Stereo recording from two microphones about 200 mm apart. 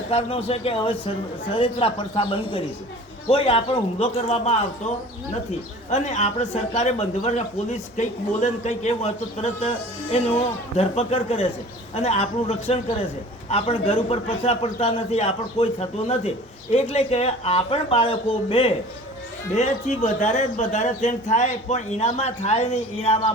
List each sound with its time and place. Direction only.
0.1 s speech: 30° left (ahead or behind)
5.9 s speech: 35° left (ahead or behind)